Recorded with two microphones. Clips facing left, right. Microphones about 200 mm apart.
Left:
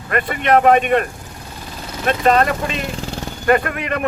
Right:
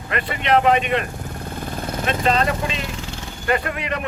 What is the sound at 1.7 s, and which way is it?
Vehicle, 50° right (ahead or behind).